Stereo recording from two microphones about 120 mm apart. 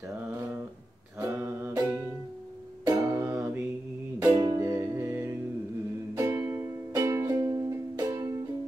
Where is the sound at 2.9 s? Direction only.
20° right (ahead or behind).